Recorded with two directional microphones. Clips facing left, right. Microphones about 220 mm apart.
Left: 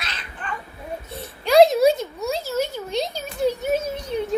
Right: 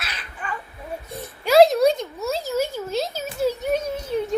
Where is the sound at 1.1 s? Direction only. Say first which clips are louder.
Even; 5° right (ahead or behind).